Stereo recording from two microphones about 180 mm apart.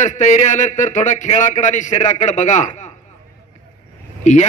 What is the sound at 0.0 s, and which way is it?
Speech, 40° left (ahead or behind).